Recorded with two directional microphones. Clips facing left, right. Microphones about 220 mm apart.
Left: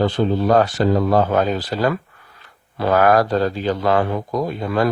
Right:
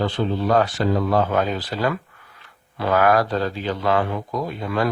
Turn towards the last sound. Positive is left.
turn(degrees=40)  # may be behind; listen again after turning